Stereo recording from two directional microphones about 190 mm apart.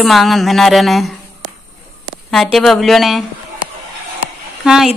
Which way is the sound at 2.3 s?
Centre (ahead or behind).